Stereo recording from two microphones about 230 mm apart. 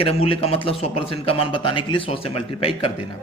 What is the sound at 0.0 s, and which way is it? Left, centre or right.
A man's voice, left.